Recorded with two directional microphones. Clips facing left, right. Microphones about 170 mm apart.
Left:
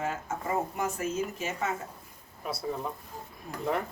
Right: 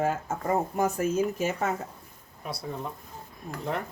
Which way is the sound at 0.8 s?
45° right (ahead or behind).